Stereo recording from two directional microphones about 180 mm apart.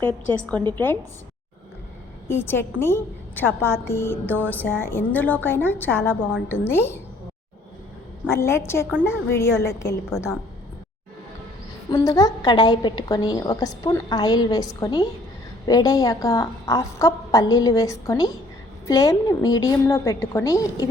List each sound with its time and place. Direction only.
0.0 s a woman's voice: 5° left (ahead or behind)
2.2 s a woman's voice: 15° left (ahead or behind)
8.3 s a woman's voice: 15° left (ahead or behind)
11.9 s a woman's voice: 20° left (ahead or behind)